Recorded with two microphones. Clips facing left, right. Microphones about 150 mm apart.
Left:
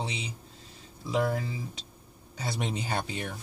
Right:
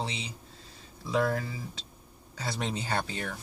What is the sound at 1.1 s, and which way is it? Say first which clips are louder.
Speech: even; 20° left (ahead or behind).